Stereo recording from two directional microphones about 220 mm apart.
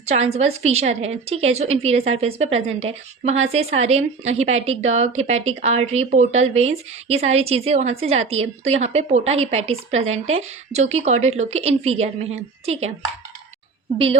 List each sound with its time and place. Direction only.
0.0 s a woman's voice: 30° right (ahead or behind)